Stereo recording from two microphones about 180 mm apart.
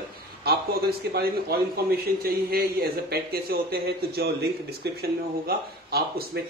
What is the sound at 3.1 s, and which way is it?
A man's voice, 60° right (ahead or behind).